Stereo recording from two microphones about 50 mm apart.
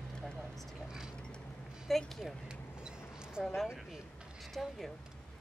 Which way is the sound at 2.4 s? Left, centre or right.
Centre.